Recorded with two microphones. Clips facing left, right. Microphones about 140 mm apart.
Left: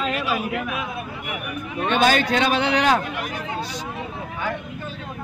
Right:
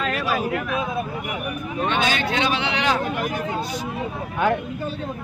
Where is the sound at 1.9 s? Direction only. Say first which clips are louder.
Left 5 dB; 45° left (ahead or behind).